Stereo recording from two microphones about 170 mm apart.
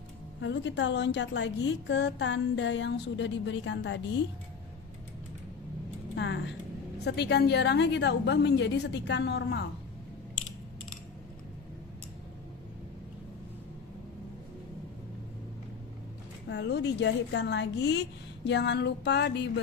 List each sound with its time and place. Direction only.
0.4 s a woman's voice: 90° left
6.1 s speech: 90° left
7.1 s a woman's voice: 75° left (ahead or behind)
16.4 s a woman's voice: 85° left